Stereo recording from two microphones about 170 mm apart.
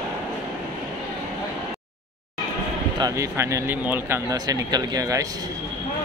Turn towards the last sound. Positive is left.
turn(degrees=-20)  # may be behind; listen again after turning